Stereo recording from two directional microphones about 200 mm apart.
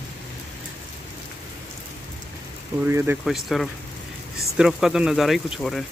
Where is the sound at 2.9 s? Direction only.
10° right (ahead or behind).